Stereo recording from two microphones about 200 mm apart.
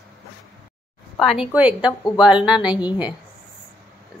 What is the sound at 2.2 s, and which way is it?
Speech, 5° right (ahead or behind).